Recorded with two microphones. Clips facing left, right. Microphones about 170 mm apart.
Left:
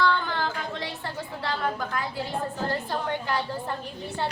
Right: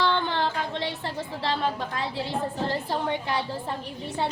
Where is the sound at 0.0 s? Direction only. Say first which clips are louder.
Right 1 dB; 25° right (ahead or behind).